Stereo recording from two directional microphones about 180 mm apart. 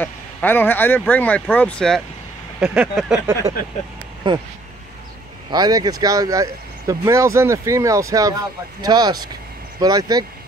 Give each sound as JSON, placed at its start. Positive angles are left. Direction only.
{"t": 0.0, "sound": "speech", "side_deg": 10}
{"t": 4.2, "sound": "speech", "side_deg": -25}
{"t": 5.5, "sound": "speech", "side_deg": -20}